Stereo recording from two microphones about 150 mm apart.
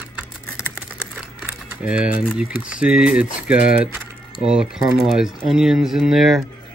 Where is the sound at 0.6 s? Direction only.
5° right (ahead or behind).